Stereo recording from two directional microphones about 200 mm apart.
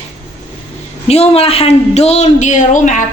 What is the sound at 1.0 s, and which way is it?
A woman's voice, 30° left (ahead or behind).